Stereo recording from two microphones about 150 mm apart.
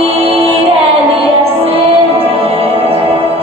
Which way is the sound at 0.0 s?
40° right (ahead or behind).